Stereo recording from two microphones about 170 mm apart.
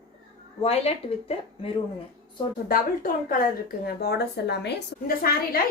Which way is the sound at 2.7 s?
55° left (ahead or behind).